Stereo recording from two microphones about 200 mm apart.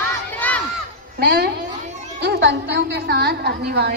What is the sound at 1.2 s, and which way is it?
A woman's voice, 55° right (ahead or behind).